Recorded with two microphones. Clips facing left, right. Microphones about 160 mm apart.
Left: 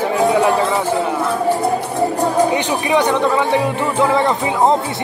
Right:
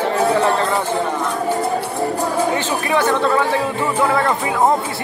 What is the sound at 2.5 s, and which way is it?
Music, 15° left (ahead or behind).